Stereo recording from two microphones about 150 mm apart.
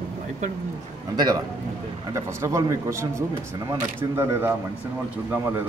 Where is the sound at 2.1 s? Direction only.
20° right (ahead or behind).